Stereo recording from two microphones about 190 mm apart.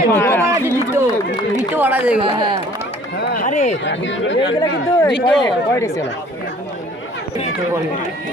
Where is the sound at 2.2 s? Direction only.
25° right (ahead or behind).